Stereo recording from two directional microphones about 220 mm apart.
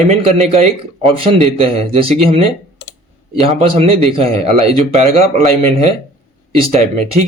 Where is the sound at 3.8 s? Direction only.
25° right (ahead or behind).